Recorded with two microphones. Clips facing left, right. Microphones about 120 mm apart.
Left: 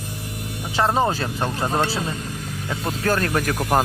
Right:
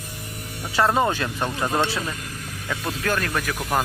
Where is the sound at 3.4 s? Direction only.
35° left (ahead or behind).